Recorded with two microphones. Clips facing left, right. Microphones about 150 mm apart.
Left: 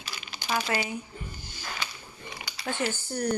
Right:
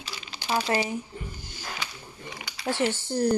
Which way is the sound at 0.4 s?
30° right (ahead or behind).